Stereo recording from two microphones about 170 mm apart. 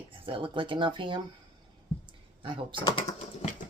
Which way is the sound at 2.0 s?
30° right (ahead or behind).